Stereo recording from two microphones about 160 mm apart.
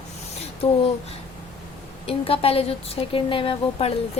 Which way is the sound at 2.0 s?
35° left (ahead or behind).